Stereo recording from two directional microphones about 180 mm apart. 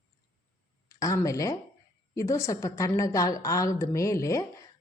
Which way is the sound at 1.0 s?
20° left (ahead or behind).